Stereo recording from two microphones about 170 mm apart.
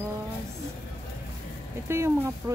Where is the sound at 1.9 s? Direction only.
15° right (ahead or behind).